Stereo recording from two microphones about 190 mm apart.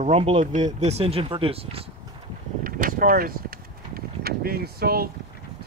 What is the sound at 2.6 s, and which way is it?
Vehicle, 50° right (ahead or behind).